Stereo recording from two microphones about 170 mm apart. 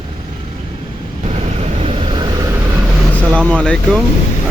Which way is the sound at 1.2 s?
40° right (ahead or behind).